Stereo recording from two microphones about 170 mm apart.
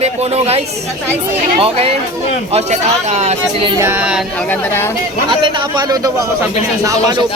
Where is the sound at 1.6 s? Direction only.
35° right (ahead or behind).